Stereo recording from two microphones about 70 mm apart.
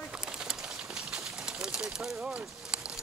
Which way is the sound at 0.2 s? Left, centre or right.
Centre.